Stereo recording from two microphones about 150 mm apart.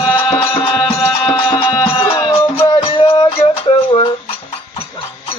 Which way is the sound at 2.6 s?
35° left (ahead or behind).